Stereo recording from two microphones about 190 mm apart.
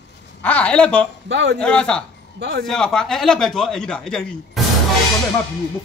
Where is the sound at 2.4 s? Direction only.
65° right (ahead or behind).